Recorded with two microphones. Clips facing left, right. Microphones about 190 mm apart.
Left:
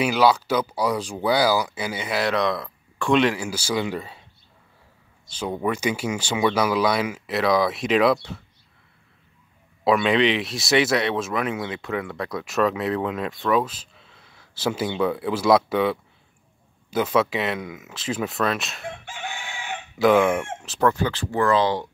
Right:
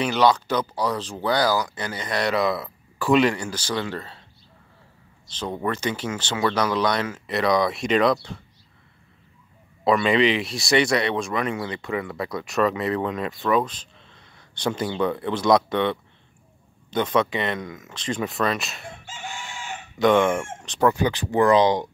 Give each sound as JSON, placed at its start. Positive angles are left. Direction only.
{"t": 0.0, "sound": "speech", "side_deg": 5}
{"t": 5.3, "sound": "speech", "side_deg": 10}
{"t": 9.8, "sound": "speech", "side_deg": 0}
{"t": 19.0, "sound": "chicken", "side_deg": 60}
{"t": 20.0, "sound": "speech", "side_deg": 5}
{"t": 20.8, "sound": "speech", "side_deg": -15}